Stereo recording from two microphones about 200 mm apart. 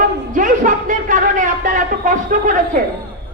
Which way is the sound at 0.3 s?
40° right (ahead or behind).